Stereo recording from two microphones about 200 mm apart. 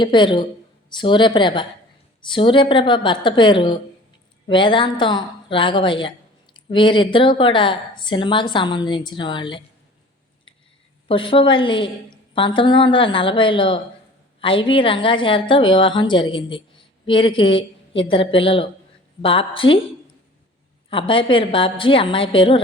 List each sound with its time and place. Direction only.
0.0 s a woman's voice: 25° left (ahead or behind)
11.1 s a woman's voice: 25° left (ahead or behind)
20.9 s a woman's voice: 25° left (ahead or behind)